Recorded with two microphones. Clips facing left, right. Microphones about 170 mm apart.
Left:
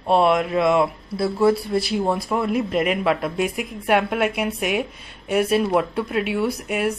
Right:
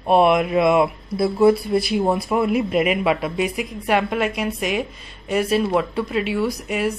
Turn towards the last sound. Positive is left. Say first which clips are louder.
# even
turn(degrees=5)  # may be behind; listen again after turning